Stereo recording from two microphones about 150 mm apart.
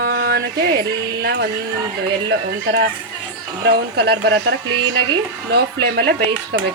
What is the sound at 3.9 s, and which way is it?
Speech, 90° right.